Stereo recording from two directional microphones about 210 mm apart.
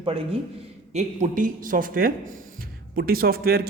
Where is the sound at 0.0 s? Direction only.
25° right (ahead or behind).